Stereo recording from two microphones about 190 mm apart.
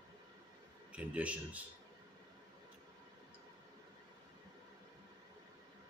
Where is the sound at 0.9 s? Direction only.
5° right (ahead or behind).